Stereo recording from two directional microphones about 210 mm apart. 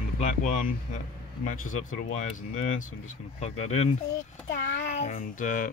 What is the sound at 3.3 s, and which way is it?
Speech, 30° left (ahead or behind).